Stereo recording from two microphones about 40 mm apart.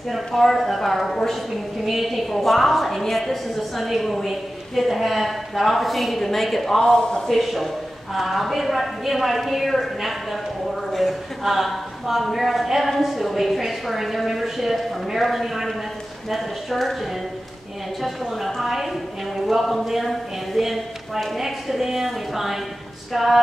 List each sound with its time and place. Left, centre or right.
0.1 s a woman's voice: centre
6.9 s a man's voice: centre
7.2 s a woman's voice: centre